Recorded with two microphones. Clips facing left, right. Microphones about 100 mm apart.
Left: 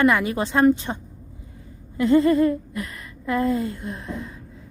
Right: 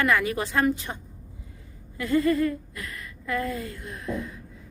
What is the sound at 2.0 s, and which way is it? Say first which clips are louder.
Speech: left 6 dB; 25° left (ahead or behind).